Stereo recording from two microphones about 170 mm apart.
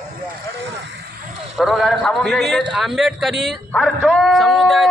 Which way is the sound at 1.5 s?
Centre (ahead or behind).